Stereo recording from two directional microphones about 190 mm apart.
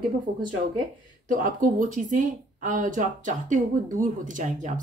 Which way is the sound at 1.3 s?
45° right (ahead or behind).